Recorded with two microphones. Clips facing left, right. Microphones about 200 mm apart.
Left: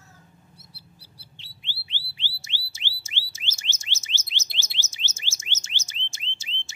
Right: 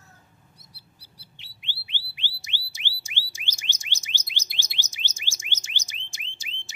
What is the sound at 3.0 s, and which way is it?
Alarm, 15° right (ahead or behind).